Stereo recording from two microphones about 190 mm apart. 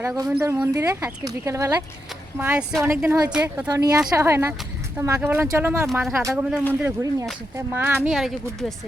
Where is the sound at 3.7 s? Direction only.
20° right (ahead or behind); by 8.3 s centre (ahead or behind).